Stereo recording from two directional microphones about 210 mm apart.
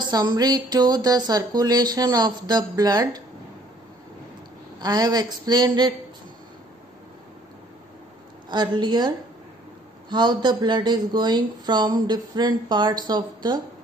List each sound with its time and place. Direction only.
0.0 s speech: 20° right (ahead or behind)
4.7 s speech: 20° right (ahead or behind)
8.5 s speech: 20° right (ahead or behind)